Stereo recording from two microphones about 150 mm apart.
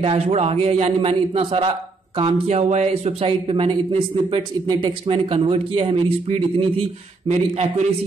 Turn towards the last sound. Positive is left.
turn(degrees=-45)  # may be behind; listen again after turning